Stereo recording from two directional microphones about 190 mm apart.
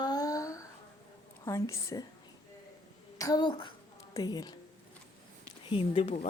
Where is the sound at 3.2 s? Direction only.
20° left (ahead or behind).